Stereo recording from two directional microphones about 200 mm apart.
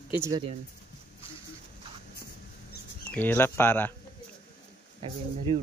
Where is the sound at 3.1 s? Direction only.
10° left (ahead or behind).